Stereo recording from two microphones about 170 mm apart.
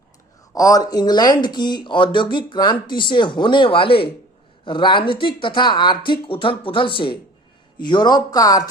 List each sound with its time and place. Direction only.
0.5 s speech: 20° left (ahead or behind)